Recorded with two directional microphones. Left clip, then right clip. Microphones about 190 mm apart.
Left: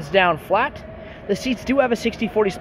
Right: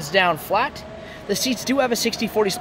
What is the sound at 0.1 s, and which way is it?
Speech, 5° left (ahead or behind).